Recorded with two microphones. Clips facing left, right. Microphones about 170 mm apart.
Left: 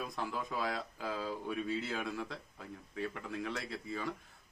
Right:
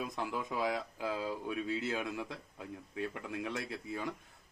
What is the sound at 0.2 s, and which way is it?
A man's voice, 15° right (ahead or behind).